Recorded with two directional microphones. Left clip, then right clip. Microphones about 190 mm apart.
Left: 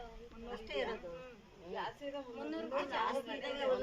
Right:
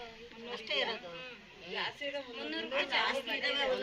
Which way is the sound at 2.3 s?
35° left (ahead or behind).